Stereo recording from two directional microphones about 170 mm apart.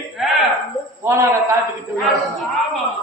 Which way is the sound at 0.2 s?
Centre (ahead or behind).